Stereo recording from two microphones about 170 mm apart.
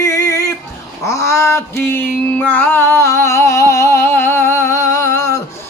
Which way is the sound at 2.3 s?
10° left (ahead or behind).